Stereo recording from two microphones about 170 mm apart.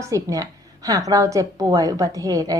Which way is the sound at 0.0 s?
20° right (ahead or behind).